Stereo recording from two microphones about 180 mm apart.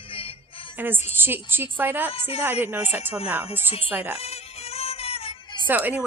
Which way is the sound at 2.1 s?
35° left (ahead or behind).